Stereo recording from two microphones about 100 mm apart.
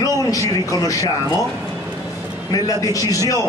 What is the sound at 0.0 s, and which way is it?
A man's voice, 35° left (ahead or behind).